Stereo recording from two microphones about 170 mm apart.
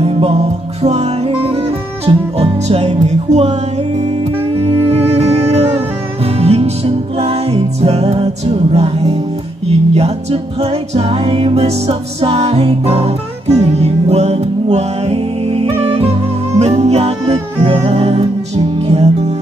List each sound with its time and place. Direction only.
0.0 s music: 35° right (ahead or behind)
5.0 s music: 35° right (ahead or behind)